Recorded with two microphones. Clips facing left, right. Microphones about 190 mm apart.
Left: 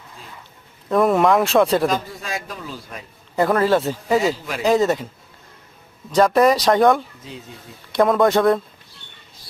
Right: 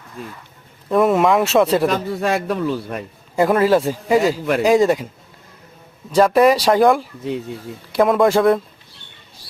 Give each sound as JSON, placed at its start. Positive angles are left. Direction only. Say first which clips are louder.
{"t": 0.9, "sound": "speech", "louder": "right 1 dB", "side_deg": 0}
{"t": 1.9, "sound": "a man's voice", "louder": "right 6 dB", "side_deg": -65}
{"t": 3.3, "sound": "speech", "louder": "right 2 dB", "side_deg": -10}
{"t": 6.1, "sound": "speech", "louder": "right 2 dB", "side_deg": 0}